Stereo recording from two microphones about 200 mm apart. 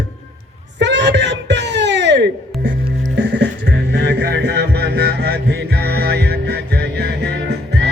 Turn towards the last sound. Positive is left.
turn(degrees=-55)  # may be behind; listen again after turning